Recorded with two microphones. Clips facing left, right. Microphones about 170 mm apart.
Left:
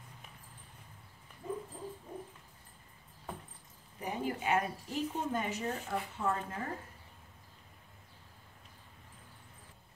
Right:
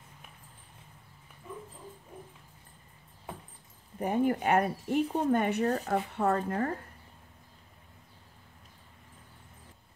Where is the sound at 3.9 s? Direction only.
55° right (ahead or behind).